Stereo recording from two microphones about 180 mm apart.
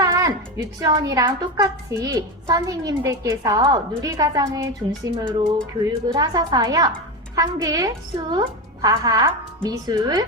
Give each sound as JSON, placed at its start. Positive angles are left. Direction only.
{"t": 0.0, "sound": "a woman's voice", "side_deg": -20}